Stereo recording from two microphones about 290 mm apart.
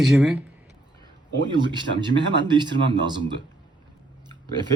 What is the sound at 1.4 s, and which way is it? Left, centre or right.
Speech, centre.